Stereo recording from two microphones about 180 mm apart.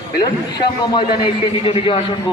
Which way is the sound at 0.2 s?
25° left (ahead or behind).